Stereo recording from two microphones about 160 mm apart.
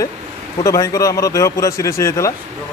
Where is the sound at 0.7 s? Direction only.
20° left (ahead or behind).